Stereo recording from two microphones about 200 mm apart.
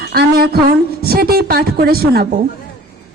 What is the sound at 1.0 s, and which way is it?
A man's voice, 50° right (ahead or behind).